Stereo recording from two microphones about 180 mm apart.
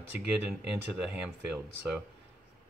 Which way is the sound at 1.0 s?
5° right (ahead or behind).